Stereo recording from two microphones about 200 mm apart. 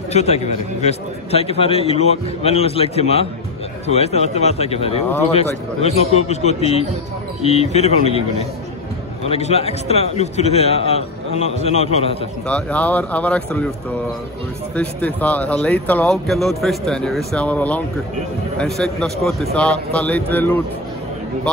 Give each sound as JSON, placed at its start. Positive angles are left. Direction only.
{"t": 0.1, "sound": "a man's voice", "side_deg": 35}
{"t": 12.4, "sound": "speech", "side_deg": 5}
{"t": 14.8, "sound": "a man's voice", "side_deg": 5}